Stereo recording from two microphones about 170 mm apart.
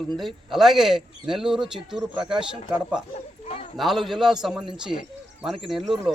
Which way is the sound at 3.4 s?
35° left (ahead or behind).